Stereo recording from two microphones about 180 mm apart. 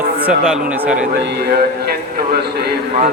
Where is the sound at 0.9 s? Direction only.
65° right (ahead or behind).